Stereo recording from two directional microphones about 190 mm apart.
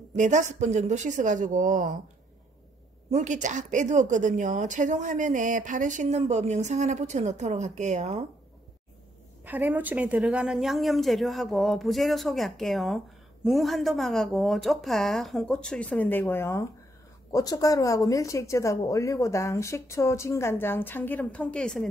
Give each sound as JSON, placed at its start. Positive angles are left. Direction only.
{"t": 0.1, "sound": "speech", "side_deg": -40}
{"t": 3.1, "sound": "speech", "side_deg": -40}
{"t": 9.4, "sound": "a woman's voice", "side_deg": -10}